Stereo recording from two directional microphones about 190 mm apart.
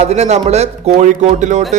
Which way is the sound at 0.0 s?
35° right (ahead or behind).